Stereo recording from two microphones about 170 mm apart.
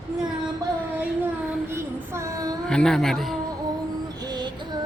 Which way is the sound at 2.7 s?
5° left (ahead or behind).